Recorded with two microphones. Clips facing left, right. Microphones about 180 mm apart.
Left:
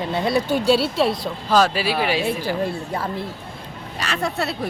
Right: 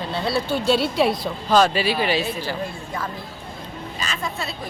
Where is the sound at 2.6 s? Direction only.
30° left (ahead or behind).